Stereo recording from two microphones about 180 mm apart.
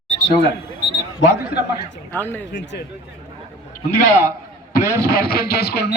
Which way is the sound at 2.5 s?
70° left (ahead or behind).